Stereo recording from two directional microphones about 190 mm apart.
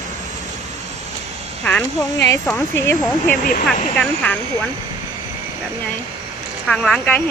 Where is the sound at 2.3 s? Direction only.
10° left (ahead or behind).